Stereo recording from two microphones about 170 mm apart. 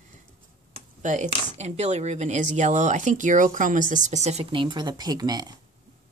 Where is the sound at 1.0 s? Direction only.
45° right (ahead or behind).